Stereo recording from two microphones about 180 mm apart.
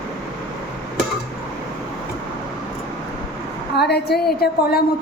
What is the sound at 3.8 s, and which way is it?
A woman's voice, 65° left (ahead or behind).